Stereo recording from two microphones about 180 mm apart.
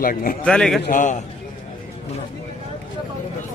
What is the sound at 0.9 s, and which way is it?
Speech, 45° left (ahead or behind).